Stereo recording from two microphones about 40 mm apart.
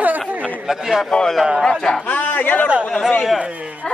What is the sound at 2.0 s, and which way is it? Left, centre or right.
Speech, left.